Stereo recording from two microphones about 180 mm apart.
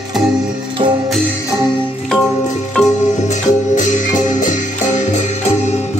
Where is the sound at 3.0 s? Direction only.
40° left (ahead or behind).